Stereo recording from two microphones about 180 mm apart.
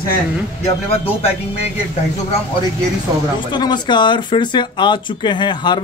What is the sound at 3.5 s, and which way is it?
A man's voice, 25° left (ahead or behind).